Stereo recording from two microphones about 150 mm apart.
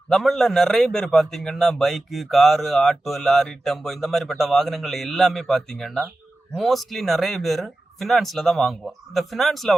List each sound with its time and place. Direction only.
0.1 s a man's voice: centre (ahead or behind)